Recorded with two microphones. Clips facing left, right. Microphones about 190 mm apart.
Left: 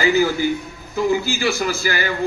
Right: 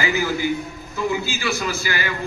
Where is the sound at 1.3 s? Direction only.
35° left (ahead or behind).